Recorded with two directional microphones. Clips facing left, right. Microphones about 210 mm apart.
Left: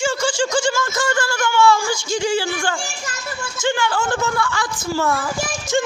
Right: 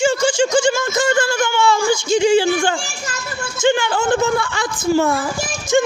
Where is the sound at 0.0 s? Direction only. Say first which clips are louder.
Right 5 dB; 20° right (ahead or behind).